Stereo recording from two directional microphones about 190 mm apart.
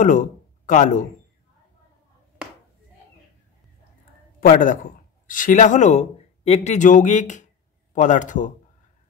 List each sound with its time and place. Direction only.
0.0 s speech: 45° left (ahead or behind)
4.4 s a man's voice: 45° left (ahead or behind)